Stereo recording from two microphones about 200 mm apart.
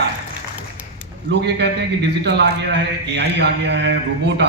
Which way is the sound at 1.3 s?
60° right (ahead or behind).